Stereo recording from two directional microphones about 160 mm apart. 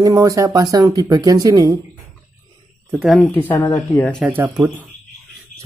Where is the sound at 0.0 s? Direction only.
20° right (ahead or behind).